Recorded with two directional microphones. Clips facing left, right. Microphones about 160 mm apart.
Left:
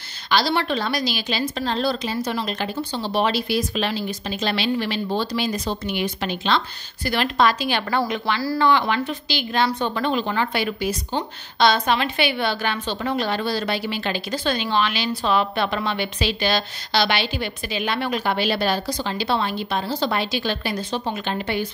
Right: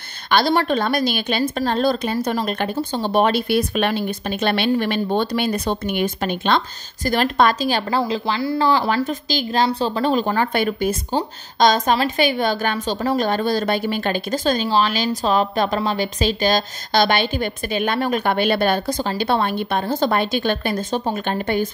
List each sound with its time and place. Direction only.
0.3 s a woman's voice: 50° right (ahead or behind)
8.0 s a woman's voice: 25° right (ahead or behind); by 21.6 s 45° right (ahead or behind)